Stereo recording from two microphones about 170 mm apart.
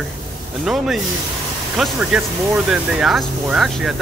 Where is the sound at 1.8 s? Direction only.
5° right (ahead or behind).